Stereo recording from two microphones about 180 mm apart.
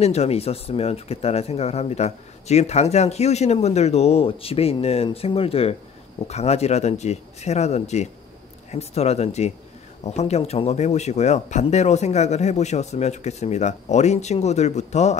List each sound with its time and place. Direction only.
0.0 s speech: 35° left (ahead or behind)